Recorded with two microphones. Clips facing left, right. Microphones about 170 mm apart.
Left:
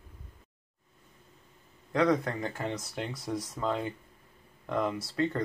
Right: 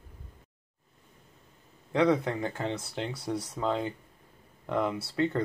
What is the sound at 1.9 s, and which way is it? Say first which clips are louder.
A man's voice: right 1 dB; 10° right (ahead or behind).